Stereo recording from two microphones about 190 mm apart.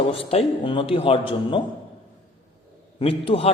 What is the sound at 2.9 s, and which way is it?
Speech, 30° left (ahead or behind).